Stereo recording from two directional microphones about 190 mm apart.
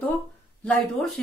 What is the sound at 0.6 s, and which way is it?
Speech, 5° left (ahead or behind).